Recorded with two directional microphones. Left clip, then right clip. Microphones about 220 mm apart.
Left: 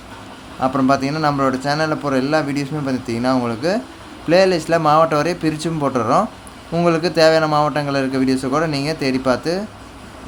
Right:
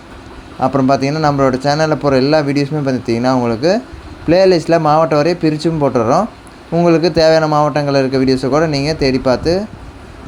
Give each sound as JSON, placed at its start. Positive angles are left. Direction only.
{"t": 0.6, "sound": "a man's voice", "side_deg": -20}